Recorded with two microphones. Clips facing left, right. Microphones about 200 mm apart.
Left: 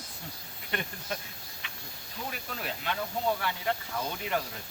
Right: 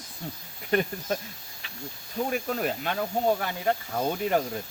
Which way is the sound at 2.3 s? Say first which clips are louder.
Right 10 dB; 45° right (ahead or behind).